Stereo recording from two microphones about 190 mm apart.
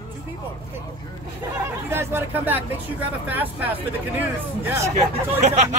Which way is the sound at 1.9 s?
10° right (ahead or behind).